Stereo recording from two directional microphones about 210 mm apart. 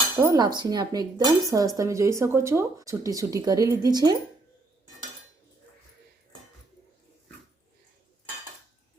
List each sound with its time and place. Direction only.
0.2 s speech: 15° right (ahead or behind)